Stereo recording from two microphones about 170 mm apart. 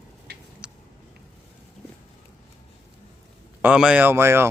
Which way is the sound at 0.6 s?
5° right (ahead or behind).